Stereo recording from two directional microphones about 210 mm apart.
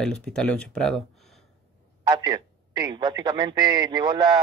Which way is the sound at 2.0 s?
20° right (ahead or behind).